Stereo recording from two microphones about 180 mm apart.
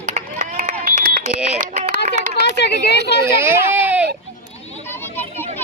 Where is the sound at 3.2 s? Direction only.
15° right (ahead or behind).